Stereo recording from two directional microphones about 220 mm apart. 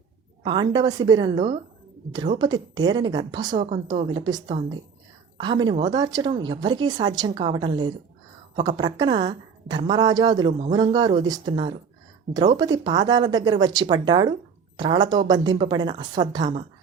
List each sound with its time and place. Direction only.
0.4 s a woman's voice: 20° right (ahead or behind)